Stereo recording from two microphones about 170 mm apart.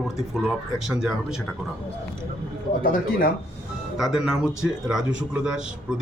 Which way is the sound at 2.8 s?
55° left (ahead or behind).